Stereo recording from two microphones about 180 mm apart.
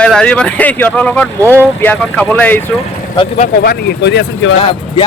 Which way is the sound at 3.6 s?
65° left (ahead or behind).